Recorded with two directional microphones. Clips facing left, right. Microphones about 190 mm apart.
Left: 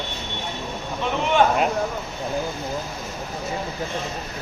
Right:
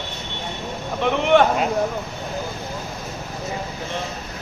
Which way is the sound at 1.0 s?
65° right (ahead or behind).